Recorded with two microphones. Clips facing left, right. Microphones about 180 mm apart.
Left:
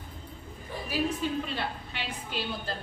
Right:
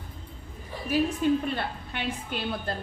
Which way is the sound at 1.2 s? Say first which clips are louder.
Right 6 dB; 55° right (ahead or behind).